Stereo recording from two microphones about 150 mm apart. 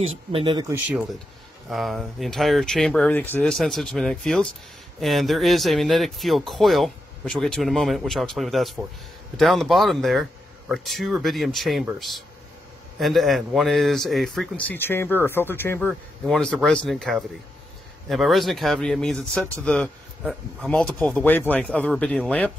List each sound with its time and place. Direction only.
0.3 s speech: 35° right (ahead or behind)
1.7 s speech: centre (ahead or behind)
14.7 s speech: 15° left (ahead or behind)
15.9 s speech: 5° left (ahead or behind)